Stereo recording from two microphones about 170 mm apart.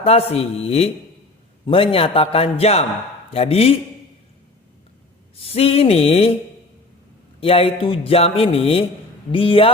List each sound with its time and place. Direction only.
0.0 s speech: 35° left (ahead or behind)
5.4 s speech: 35° left (ahead or behind)
7.4 s speech: 35° left (ahead or behind)